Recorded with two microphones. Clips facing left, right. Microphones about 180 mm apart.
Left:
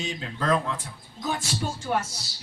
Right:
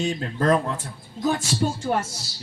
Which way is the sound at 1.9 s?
30° right (ahead or behind).